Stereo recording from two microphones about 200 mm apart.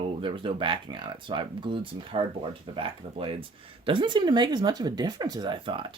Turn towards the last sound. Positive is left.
turn(degrees=-25)  # may be behind; listen again after turning